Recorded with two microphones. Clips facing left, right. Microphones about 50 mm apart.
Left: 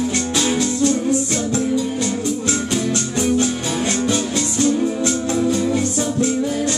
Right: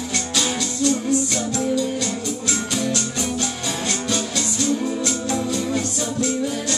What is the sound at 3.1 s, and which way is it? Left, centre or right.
Music, left.